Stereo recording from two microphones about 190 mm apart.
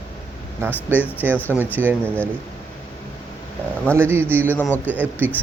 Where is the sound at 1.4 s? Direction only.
10° left (ahead or behind).